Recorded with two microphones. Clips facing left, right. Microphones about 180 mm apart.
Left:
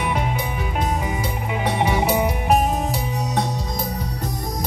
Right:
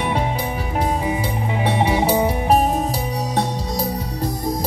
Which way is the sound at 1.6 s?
30° right (ahead or behind).